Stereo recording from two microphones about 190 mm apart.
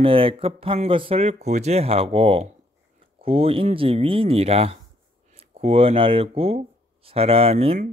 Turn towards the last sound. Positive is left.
turn(degrees=-35)  # may be behind; listen again after turning